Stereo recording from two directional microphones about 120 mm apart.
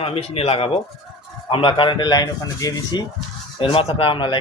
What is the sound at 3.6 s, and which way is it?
Speech, 50° left (ahead or behind).